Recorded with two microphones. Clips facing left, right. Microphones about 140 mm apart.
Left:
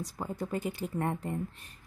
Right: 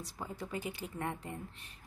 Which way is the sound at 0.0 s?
45° left (ahead or behind).